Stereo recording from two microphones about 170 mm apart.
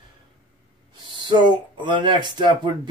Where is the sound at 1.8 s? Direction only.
30° right (ahead or behind).